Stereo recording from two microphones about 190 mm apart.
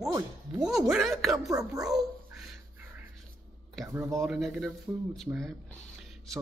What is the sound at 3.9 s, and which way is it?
Speech, 15° right (ahead or behind).